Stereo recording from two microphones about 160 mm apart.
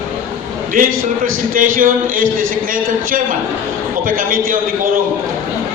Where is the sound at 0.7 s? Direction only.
60° right (ahead or behind).